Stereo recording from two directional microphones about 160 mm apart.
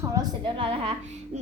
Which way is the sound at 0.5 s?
35° right (ahead or behind).